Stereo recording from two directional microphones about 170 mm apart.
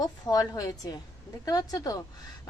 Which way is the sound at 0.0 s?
20° left (ahead or behind).